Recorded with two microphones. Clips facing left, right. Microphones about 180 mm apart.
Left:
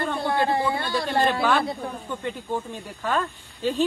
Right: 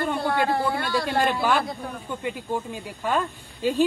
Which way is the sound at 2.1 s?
10° right (ahead or behind).